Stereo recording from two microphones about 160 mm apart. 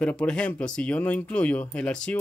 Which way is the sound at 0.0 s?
5° left (ahead or behind).